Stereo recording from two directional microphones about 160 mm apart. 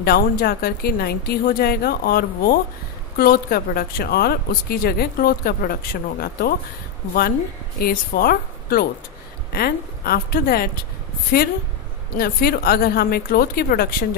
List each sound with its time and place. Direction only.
0.0 s a woman's voice: 70° left (ahead or behind)
7.8 s a woman's voice: 70° left (ahead or behind)